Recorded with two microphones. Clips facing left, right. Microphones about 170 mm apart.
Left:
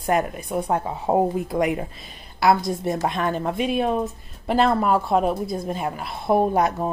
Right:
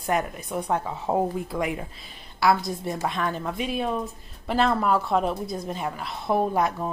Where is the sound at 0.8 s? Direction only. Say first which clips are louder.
Left 4 dB; 25° left (ahead or behind).